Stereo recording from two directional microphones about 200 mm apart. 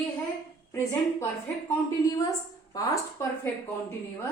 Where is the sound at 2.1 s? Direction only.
20° left (ahead or behind).